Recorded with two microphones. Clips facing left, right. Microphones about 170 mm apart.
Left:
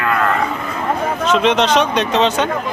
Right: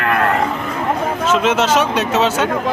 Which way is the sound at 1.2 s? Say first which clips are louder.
Left 1 dB; 5° right (ahead or behind).